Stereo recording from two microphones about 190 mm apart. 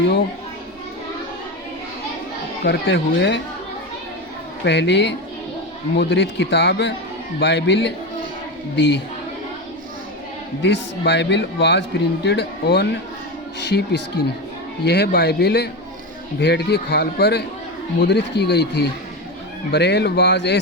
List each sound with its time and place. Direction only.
2.6 s speech: 70° left (ahead or behind)
4.6 s speech: 65° left (ahead or behind)
10.6 s speech: 70° left (ahead or behind)